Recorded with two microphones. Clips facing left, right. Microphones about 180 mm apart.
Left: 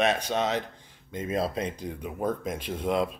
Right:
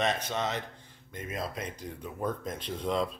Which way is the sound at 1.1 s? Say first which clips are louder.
Left 8 dB; 25° left (ahead or behind).